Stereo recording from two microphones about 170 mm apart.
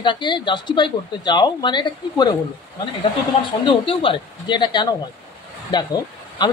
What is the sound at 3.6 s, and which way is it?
A man's voice, 30° left (ahead or behind).